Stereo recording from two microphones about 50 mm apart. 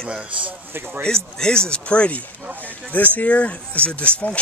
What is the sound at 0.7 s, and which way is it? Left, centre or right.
Speech, right.